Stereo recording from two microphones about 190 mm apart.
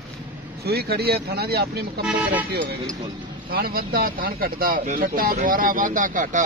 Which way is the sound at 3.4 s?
50° right (ahead or behind).